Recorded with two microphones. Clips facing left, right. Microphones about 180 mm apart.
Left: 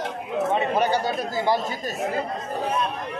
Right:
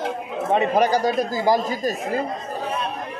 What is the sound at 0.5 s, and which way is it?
Bird, 40° right (ahead or behind).